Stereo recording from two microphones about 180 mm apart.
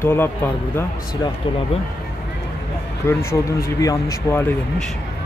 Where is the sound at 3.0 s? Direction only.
15° left (ahead or behind).